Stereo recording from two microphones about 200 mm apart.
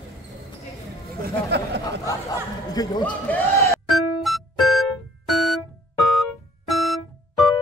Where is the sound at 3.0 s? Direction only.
10° left (ahead or behind).